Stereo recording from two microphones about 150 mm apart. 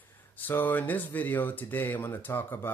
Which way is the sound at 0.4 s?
15° left (ahead or behind).